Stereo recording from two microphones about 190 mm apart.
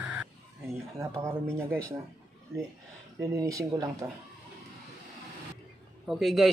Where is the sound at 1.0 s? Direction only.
15° right (ahead or behind).